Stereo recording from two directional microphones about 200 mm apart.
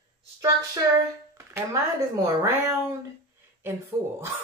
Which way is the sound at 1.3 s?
15° right (ahead or behind).